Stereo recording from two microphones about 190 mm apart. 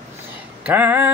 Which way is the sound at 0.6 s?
10° right (ahead or behind).